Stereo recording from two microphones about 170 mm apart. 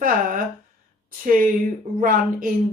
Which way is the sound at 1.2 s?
55° right (ahead or behind).